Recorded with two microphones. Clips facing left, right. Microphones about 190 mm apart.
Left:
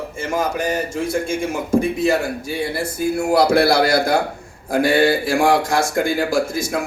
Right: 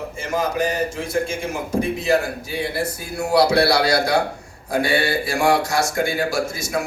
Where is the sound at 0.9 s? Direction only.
50° left (ahead or behind).